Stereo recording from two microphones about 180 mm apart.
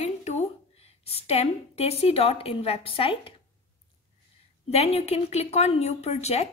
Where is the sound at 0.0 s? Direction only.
40° left (ahead or behind).